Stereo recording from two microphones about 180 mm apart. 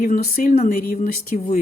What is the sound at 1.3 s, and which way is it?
Speech, 35° left (ahead or behind).